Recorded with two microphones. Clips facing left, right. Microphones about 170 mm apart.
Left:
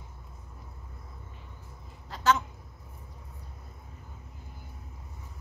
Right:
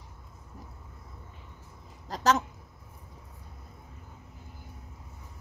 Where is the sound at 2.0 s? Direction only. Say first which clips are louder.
Right 1 dB; 40° right (ahead or behind).